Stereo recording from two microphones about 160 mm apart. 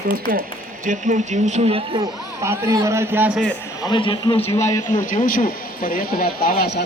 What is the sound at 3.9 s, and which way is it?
Speech, 30° left (ahead or behind).